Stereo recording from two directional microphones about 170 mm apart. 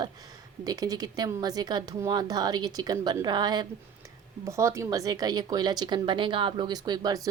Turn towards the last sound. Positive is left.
turn(degrees=-25)  # may be behind; listen again after turning